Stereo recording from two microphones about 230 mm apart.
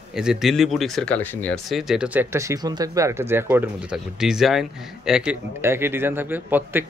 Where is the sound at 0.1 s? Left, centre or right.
Centre.